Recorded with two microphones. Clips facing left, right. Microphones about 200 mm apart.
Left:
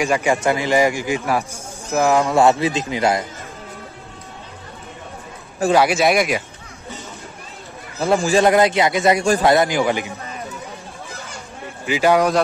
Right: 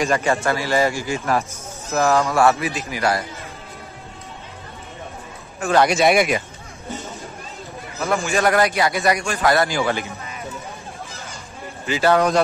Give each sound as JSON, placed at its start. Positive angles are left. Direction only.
{"t": 0.0, "sound": "a man's voice", "side_deg": 15}
{"t": 5.7, "sound": "speech", "side_deg": 5}
{"t": 8.0, "sound": "a man's voice", "side_deg": 30}
{"t": 8.5, "sound": "a man's voice", "side_deg": 20}
{"t": 9.2, "sound": "a man's voice", "side_deg": 35}
{"t": 9.5, "sound": "a man's voice", "side_deg": 20}
{"t": 11.8, "sound": "a man's voice", "side_deg": 10}